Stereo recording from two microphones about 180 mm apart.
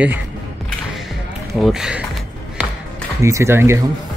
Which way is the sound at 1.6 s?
5° right (ahead or behind).